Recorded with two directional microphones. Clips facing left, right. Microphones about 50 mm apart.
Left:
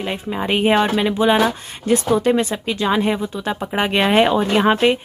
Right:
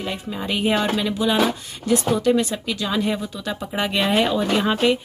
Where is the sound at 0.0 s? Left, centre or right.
Left.